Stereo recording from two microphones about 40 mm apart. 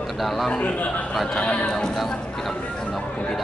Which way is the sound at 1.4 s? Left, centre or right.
Left.